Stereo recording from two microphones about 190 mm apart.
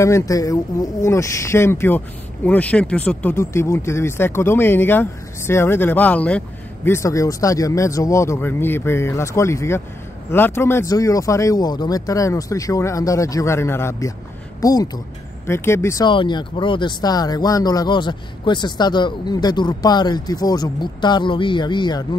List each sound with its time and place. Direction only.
0.0 s speech: 15° left (ahead or behind)